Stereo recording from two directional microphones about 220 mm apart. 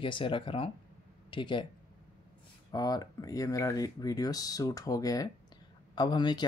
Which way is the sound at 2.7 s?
15° left (ahead or behind).